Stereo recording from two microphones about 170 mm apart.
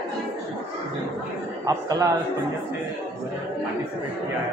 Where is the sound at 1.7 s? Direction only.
20° right (ahead or behind).